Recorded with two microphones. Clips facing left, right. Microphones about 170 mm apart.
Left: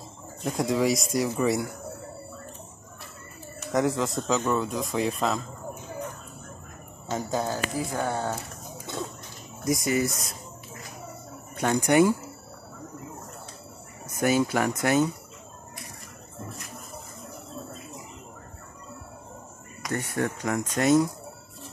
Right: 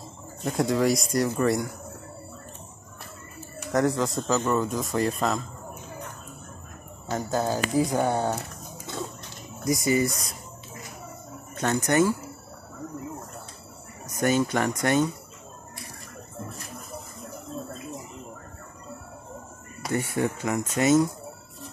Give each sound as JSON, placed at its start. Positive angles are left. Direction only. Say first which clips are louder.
{"t": 0.5, "sound": "speech", "louder": "right 1 dB", "side_deg": 0}
{"t": 3.7, "sound": "speech", "louder": "right 1 dB", "side_deg": 0}
{"t": 7.1, "sound": "speech", "louder": "right 1 dB", "side_deg": 0}
{"t": 7.4, "sound": "speech", "louder": "right 5 dB", "side_deg": -15}
{"t": 9.7, "sound": "speech", "louder": "right 2 dB", "side_deg": 0}
{"t": 11.5, "sound": "speech", "louder": "left 2 dB", "side_deg": 15}
{"t": 14.2, "sound": "speech", "louder": "even", "side_deg": 5}
{"t": 19.9, "sound": "speech", "louder": "right 2 dB", "side_deg": -10}